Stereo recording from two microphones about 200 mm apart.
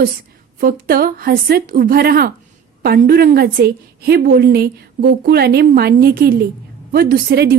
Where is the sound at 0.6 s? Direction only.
45° right (ahead or behind).